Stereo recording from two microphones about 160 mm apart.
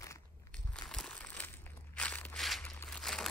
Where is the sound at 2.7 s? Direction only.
10° left (ahead or behind).